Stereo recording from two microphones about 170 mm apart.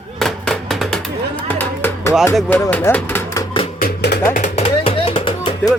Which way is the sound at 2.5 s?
10° left (ahead or behind).